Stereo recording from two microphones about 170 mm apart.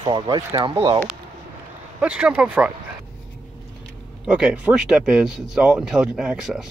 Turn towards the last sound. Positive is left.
turn(degrees=-5)  # may be behind; listen again after turning